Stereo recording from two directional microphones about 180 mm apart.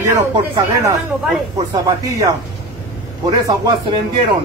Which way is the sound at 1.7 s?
20° right (ahead or behind).